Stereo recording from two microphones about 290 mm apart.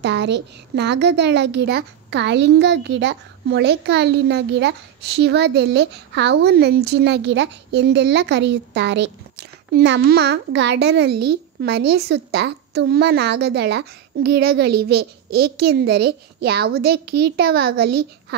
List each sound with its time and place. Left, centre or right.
0.0 s a woman's voice: right